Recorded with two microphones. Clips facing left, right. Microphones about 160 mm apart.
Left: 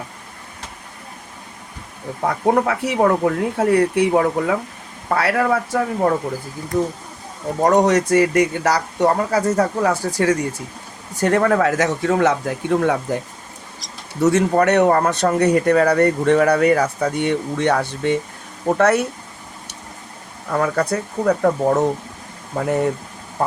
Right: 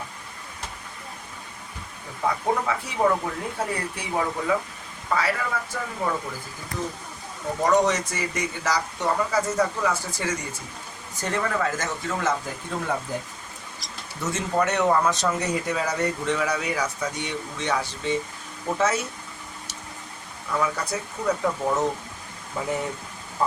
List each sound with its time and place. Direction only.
2.2 s speech: 70° left (ahead or behind)
7.6 s speech: 60° left (ahead or behind)
14.2 s speech: 70° left (ahead or behind)
20.5 s speech: 60° left (ahead or behind)